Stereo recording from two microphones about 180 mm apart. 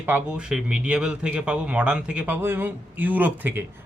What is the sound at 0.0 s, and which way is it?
Speech, 10° right (ahead or behind).